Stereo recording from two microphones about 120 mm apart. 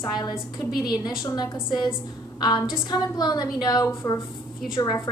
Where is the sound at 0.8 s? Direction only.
35° left (ahead or behind).